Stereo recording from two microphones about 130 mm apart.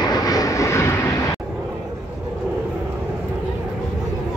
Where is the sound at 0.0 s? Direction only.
30° left (ahead or behind).